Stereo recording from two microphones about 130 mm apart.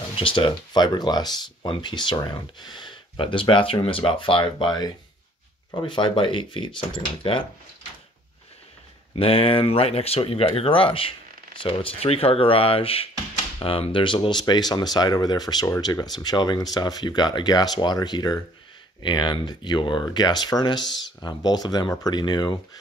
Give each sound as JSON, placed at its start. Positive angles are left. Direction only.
{"t": 0.2, "sound": "speech", "side_deg": 40}
{"t": 9.1, "sound": "speech", "side_deg": 45}